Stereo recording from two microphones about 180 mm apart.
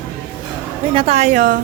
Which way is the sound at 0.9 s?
35° right (ahead or behind).